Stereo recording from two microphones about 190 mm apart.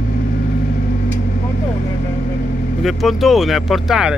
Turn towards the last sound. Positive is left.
turn(degrees=0)  # may be behind; listen again after turning